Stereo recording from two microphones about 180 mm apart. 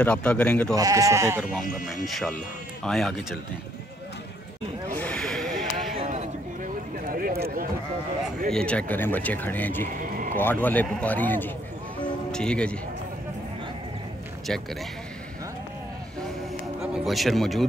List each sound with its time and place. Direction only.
0.0 s speech: 5° left (ahead or behind)
0.7 s speech: 20° right (ahead or behind)
1.4 s speech: centre (ahead or behind)
4.9 s a sound: 5° left (ahead or behind)
7.1 s a sound: 50° right (ahead or behind)
8.5 s speech: 5° left (ahead or behind)
9.9 s a sound: 50° right (ahead or behind)
10.3 s speech: 10° left (ahead or behind)
14.5 s speech: centre (ahead or behind)
17.0 s speech: centre (ahead or behind)